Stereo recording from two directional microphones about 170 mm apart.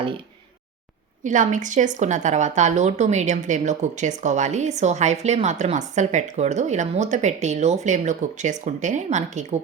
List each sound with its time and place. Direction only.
1.2 s a woman's voice: 45° right (ahead or behind)